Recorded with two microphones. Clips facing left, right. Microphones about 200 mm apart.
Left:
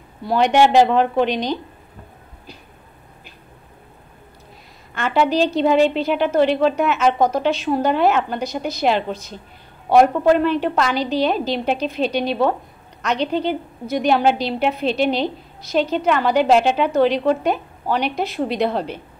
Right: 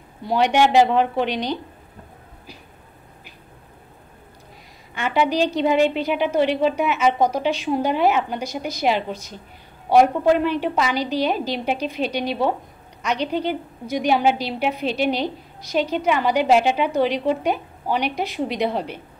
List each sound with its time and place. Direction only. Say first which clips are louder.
0.4 s a woman's voice: left 2 dB; 10° right (ahead or behind)
4.9 s a woman's voice: left 2 dB; 10° right (ahead or behind)